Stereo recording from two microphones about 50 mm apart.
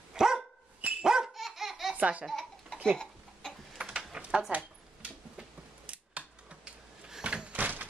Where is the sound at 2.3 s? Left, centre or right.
Centre.